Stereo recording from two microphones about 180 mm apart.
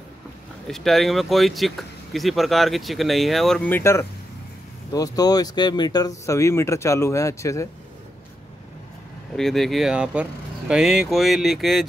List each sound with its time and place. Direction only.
0.7 s speech: centre (ahead or behind); by 7.6 s 15° left (ahead or behind)
9.4 s speech: centre (ahead or behind)